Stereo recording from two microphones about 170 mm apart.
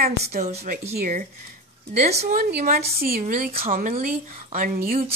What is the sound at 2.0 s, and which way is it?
Speech, 40° right (ahead or behind).